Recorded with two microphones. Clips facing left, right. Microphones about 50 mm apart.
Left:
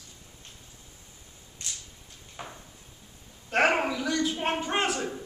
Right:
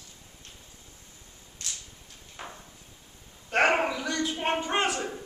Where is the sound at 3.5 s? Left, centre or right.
Centre.